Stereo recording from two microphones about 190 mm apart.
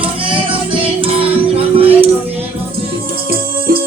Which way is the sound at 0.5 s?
30° right (ahead or behind).